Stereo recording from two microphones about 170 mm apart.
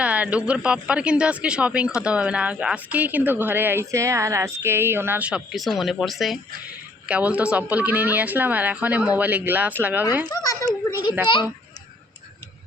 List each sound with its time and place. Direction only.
0.0 s speech: 5° right (ahead or behind)
10.2 s speech: 20° left (ahead or behind)